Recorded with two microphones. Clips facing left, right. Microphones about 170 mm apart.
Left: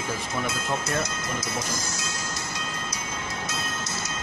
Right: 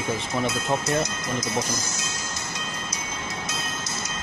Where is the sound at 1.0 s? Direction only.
20° right (ahead or behind).